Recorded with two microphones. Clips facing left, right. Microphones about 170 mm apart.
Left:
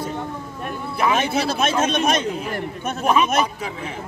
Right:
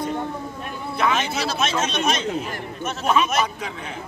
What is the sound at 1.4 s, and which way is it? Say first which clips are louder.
A man's voice: left 3 dB; 55° left (ahead or behind).